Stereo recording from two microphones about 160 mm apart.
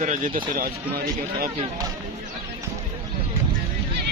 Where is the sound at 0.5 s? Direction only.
70° right (ahead or behind).